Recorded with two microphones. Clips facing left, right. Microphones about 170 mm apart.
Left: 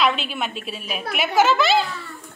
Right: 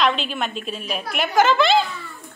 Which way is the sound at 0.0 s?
5° left (ahead or behind).